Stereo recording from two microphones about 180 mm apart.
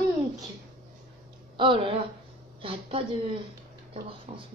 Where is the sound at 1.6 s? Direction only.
30° right (ahead or behind).